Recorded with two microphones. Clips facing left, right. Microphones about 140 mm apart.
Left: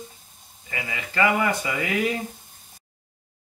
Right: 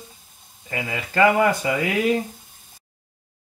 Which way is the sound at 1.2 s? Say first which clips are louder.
Right 5 dB; 40° right (ahead or behind).